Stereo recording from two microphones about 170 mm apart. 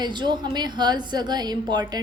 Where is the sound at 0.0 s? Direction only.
25° right (ahead or behind).